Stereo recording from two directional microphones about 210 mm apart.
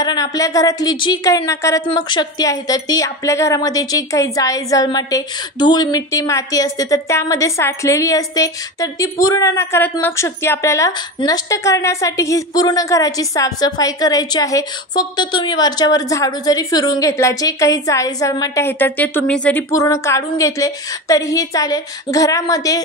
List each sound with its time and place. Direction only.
0.0 s a woman's voice: 20° left (ahead or behind)